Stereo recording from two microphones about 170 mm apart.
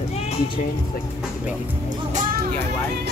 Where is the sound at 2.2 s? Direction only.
55° right (ahead or behind).